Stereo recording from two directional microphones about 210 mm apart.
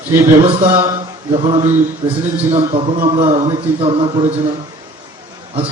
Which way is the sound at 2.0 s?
15° right (ahead or behind).